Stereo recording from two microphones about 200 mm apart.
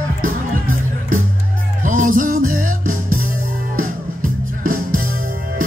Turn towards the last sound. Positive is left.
turn(degrees=-45)  # may be behind; listen again after turning